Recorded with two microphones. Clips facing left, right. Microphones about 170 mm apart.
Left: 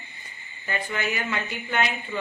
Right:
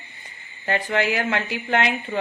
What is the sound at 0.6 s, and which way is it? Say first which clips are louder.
Speech: right 7 dB; 75° right (ahead or behind).